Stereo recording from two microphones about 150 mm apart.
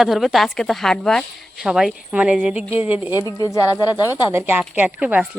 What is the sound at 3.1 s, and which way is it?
A woman's voice, 25° left (ahead or behind).